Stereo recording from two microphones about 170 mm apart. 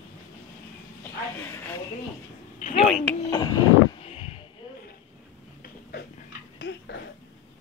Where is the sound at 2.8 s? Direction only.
5° left (ahead or behind).